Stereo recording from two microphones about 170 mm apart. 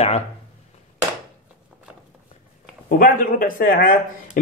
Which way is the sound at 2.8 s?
55° left (ahead or behind).